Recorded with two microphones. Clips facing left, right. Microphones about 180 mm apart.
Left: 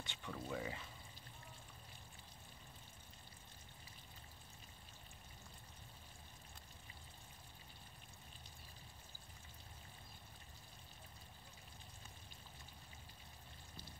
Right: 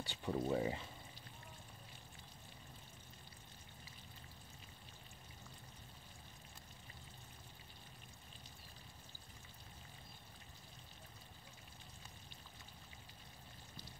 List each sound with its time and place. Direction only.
0.0 s speech: 35° right (ahead or behind)